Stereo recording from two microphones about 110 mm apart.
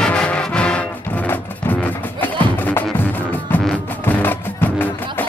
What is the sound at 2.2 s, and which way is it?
Music, 15° left (ahead or behind).